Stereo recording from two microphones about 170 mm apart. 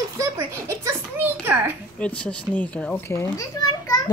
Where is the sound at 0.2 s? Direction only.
15° right (ahead or behind).